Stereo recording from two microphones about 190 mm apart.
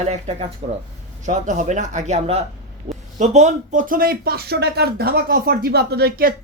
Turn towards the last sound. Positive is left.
turn(degrees=-50)  # may be behind; listen again after turning